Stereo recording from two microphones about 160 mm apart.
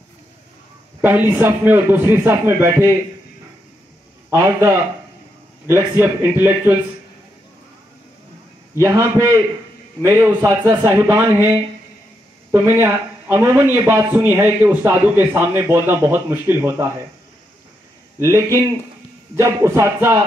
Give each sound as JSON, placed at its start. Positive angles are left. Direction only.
{"t": 1.0, "sound": "a man's voice", "side_deg": -10}
{"t": 4.3, "sound": "a man's voice", "side_deg": -15}
{"t": 8.7, "sound": "a man's voice", "side_deg": -20}
{"t": 10.0, "sound": "a man's voice", "side_deg": -15}
{"t": 18.2, "sound": "a man's voice", "side_deg": -20}